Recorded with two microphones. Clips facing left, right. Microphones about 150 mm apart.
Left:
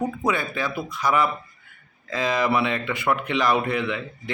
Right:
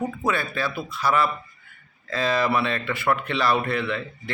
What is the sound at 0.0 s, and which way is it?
A man's voice, 15° left (ahead or behind).